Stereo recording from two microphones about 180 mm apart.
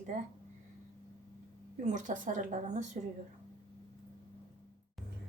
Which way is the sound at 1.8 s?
45° right (ahead or behind).